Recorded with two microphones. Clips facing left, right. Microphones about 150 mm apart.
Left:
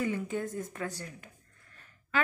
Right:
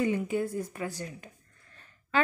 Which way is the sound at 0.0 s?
10° right (ahead or behind).